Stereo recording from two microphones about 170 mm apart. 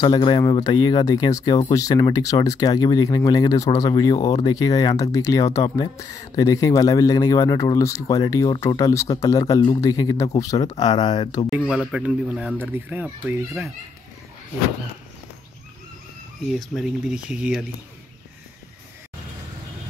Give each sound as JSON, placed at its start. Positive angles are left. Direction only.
{"t": 0.0, "sound": "speech", "side_deg": 25}
{"t": 11.5, "sound": "speech", "side_deg": -5}
{"t": 16.4, "sound": "speech", "side_deg": 0}